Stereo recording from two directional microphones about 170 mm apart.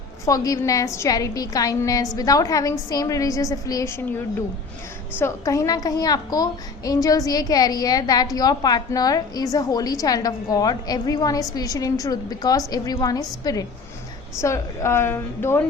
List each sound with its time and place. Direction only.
0.3 s a child's voice: 20° left (ahead or behind)
5.2 s a child's voice: 20° left (ahead or behind)